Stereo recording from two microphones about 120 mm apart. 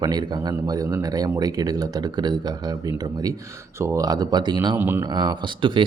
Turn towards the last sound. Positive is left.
turn(degrees=-40)  # may be behind; listen again after turning